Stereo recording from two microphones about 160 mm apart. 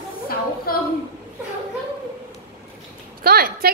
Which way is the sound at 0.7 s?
70° left (ahead or behind).